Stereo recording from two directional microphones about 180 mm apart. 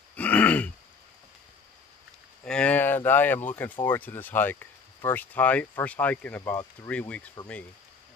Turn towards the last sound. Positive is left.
turn(degrees=5)  # may be behind; listen again after turning